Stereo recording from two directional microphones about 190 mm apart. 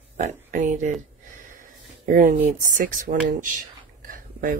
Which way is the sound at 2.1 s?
45° right (ahead or behind).